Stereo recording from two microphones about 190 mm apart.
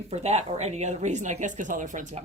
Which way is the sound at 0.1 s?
35° right (ahead or behind).